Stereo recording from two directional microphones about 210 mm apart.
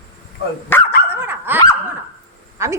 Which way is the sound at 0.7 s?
10° left (ahead or behind).